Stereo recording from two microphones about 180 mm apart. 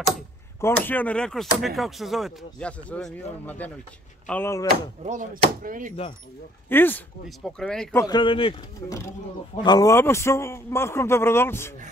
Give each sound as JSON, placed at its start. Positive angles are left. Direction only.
{"t": 0.6, "sound": "a man's voice", "side_deg": 10}
{"t": 5.0, "sound": "speech", "side_deg": -45}
{"t": 6.7, "sound": "a man's voice", "side_deg": 10}
{"t": 8.0, "sound": "speech", "side_deg": 25}
{"t": 8.8, "sound": "a man's voice", "side_deg": 20}